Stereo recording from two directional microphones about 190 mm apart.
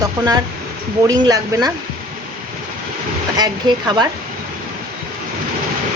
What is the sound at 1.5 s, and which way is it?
Speech, 15° right (ahead or behind).